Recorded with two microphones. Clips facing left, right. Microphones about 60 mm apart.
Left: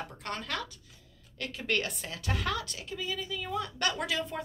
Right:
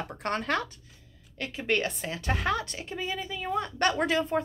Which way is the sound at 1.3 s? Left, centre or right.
Right.